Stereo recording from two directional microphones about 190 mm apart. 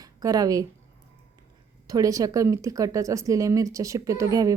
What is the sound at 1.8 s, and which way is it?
A woman's voice, 20° right (ahead or behind).